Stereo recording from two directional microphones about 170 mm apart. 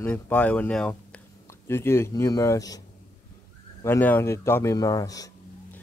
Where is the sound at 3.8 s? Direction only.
10° left (ahead or behind).